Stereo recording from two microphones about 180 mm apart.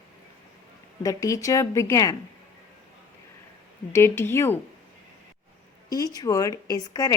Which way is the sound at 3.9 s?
15° left (ahead or behind).